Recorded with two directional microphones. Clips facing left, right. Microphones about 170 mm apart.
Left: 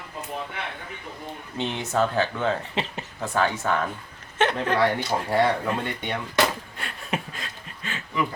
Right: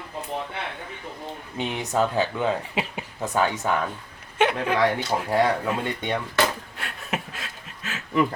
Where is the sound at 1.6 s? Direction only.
15° right (ahead or behind).